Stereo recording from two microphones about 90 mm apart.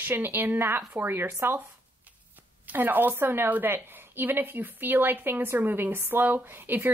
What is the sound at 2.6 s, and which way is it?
A woman's voice, 20° right (ahead or behind).